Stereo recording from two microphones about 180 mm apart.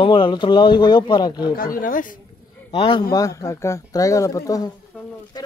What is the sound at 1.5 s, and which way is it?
Speech, 50° left (ahead or behind).